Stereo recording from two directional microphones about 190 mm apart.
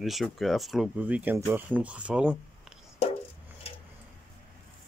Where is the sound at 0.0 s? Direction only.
Centre (ahead or behind).